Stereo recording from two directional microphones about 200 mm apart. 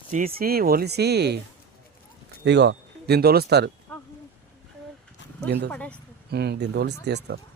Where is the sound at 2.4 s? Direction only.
60° right (ahead or behind).